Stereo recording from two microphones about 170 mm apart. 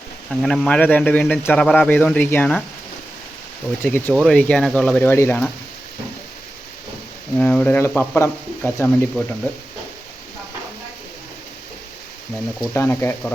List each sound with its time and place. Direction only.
0.3 s speech: centre (ahead or behind)
3.8 s speech: 10° left (ahead or behind)
7.3 s speech: 10° left (ahead or behind)
12.7 s speech: 15° left (ahead or behind)